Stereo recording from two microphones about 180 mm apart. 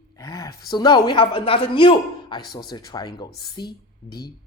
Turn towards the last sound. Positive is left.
turn(degrees=25)  # may be behind; listen again after turning